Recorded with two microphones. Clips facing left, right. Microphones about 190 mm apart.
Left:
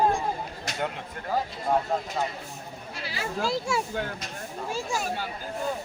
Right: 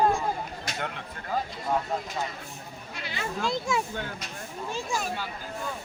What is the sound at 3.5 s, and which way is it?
Speech, 5° left (ahead or behind).